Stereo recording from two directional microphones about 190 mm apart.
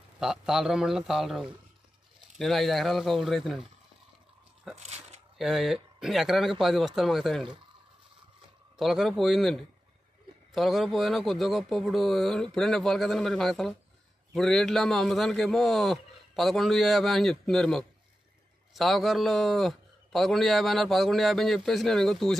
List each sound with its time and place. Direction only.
0.2 s a man's voice: 5° right (ahead or behind)
4.7 s a sound: 35° right (ahead or behind)
5.4 s a man's voice: centre (ahead or behind)
8.7 s a man's voice: centre (ahead or behind)